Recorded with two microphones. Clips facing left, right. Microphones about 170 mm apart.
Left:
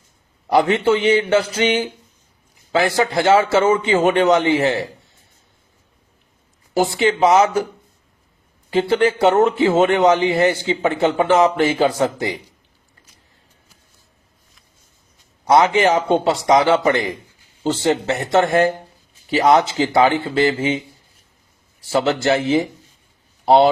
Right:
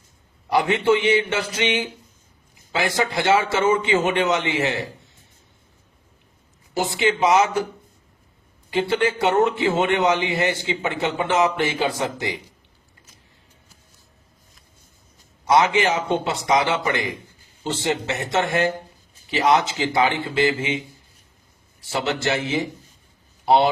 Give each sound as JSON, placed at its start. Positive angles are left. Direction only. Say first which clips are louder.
{"t": 0.7, "sound": "a man's voice", "louder": "left 3 dB", "side_deg": 35}
{"t": 3.1, "sound": "a man's voice", "louder": "left 5 dB", "side_deg": 30}
{"t": 6.7, "sound": "a man's voice", "louder": "left 4 dB", "side_deg": 35}
{"t": 8.9, "sound": "a man's voice", "louder": "left 6 dB", "side_deg": 35}
{"t": 15.4, "sound": "a man's voice", "louder": "left 4 dB", "side_deg": 35}
{"t": 21.9, "sound": "a man's voice", "louder": "left 6 dB", "side_deg": 35}